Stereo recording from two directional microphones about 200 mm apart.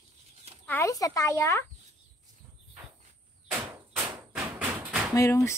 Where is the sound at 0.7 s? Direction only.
15° left (ahead or behind).